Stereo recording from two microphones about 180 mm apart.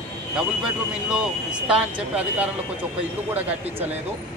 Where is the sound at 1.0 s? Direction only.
5° right (ahead or behind).